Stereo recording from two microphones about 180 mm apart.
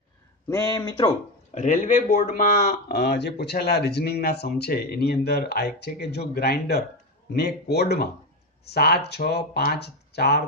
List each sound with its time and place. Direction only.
0.5 s speech: 15° left (ahead or behind)
1.5 s speech: 40° left (ahead or behind)
2.9 s speech: 60° left (ahead or behind)